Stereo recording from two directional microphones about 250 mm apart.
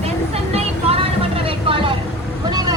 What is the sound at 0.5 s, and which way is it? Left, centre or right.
Vehicle, right.